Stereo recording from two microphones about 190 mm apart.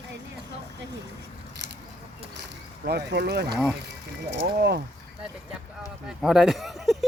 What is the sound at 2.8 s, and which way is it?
Speech, 60° right (ahead or behind).